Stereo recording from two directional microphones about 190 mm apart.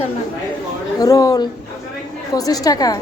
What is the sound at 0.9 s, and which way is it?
A woman's voice, 20° left (ahead or behind).